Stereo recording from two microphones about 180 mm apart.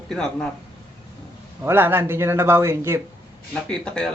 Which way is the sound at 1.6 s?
10° right (ahead or behind).